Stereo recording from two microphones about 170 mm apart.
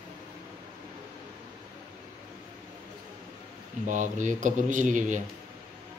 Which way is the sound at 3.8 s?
45° right (ahead or behind).